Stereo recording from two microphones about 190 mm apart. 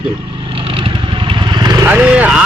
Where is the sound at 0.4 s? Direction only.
30° right (ahead or behind).